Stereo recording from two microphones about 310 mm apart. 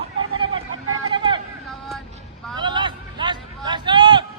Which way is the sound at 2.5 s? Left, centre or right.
Centre.